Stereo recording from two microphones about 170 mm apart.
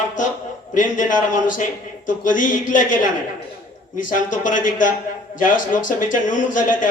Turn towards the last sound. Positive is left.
turn(degrees=50)  # may be behind; listen again after turning